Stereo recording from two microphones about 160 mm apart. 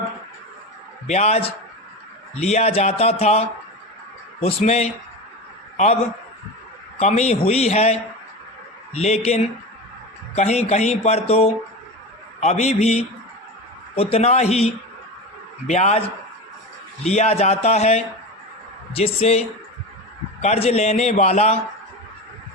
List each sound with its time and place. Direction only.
1.0 s a man's voice: 45° left (ahead or behind)
9.0 s a man's voice: 40° left (ahead or behind)